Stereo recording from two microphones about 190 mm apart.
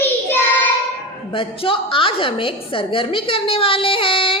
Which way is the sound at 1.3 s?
30° left (ahead or behind).